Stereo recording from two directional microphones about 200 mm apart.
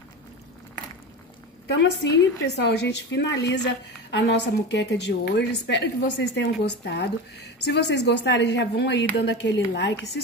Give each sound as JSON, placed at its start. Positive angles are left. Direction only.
{"t": 1.7, "sound": "a woman's voice", "side_deg": 60}